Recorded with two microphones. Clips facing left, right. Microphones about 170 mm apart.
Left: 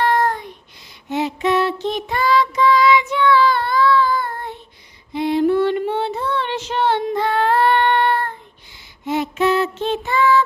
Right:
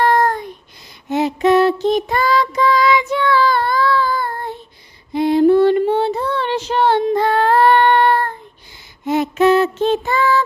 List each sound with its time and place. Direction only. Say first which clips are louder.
0.0 s child singing: right 3 dB; 40° right (ahead or behind)
1.1 s music: right 5 dB; 40° right (ahead or behind)
5.1 s child singing: right 5 dB; 40° right (ahead or behind)
9.0 s music: right 5 dB; 45° right (ahead or behind)